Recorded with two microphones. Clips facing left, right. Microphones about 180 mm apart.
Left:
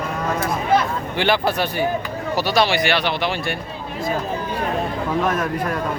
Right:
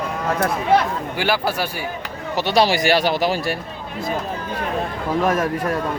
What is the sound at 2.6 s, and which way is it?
Speech, 40° right (ahead or behind).